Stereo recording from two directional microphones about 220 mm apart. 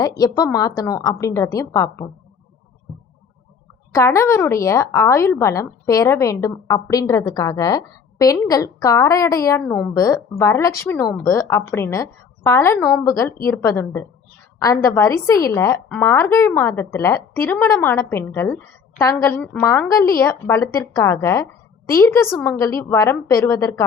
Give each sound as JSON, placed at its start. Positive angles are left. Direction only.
{"t": 0.2, "sound": "a woman's voice", "side_deg": 15}
{"t": 3.9, "sound": "a woman's voice", "side_deg": 15}